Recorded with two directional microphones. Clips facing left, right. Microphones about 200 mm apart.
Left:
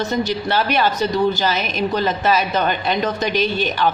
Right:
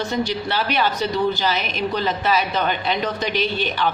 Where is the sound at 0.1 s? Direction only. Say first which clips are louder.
Left 3 dB; 45° left (ahead or behind).